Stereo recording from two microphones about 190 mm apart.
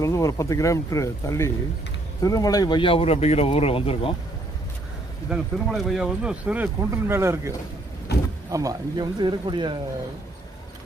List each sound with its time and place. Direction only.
0.0 s speech: 15° left (ahead or behind)
5.3 s speech: centre (ahead or behind)
8.1 s vehicle: 60° left (ahead or behind)
8.4 s speech: 15° right (ahead or behind)